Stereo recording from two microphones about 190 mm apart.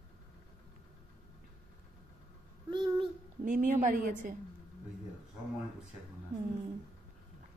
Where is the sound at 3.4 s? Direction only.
45° right (ahead or behind).